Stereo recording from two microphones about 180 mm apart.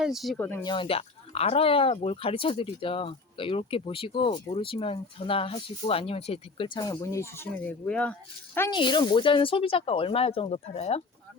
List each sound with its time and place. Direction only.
0.0 s speech: centre (ahead or behind)
0.3 s speech: 10° left (ahead or behind)
0.6 s speech: 25° left (ahead or behind); by 8.1 s 5° left (ahead or behind)
8.7 s speech: 25° left (ahead or behind)